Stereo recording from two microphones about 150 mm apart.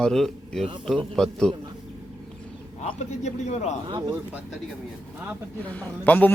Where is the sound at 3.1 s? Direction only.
50° left (ahead or behind).